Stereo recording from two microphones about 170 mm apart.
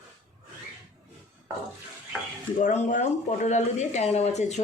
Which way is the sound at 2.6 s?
45° left (ahead or behind).